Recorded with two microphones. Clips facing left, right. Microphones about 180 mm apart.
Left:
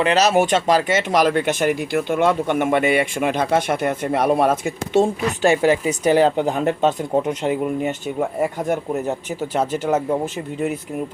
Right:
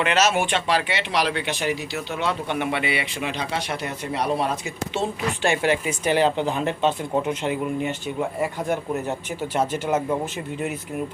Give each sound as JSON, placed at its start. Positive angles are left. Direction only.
{"t": 0.0, "sound": "speech", "side_deg": 35}